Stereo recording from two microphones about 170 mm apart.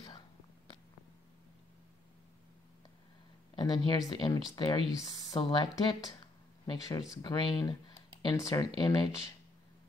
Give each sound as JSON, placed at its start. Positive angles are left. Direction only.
{"t": 3.5, "sound": "speech", "side_deg": 25}